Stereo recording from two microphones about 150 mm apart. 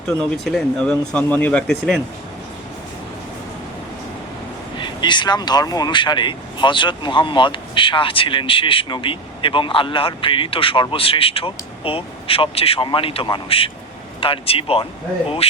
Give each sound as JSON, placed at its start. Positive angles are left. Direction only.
{"t": 0.2, "sound": "speech", "side_deg": 5}
{"t": 4.8, "sound": "speech", "side_deg": 30}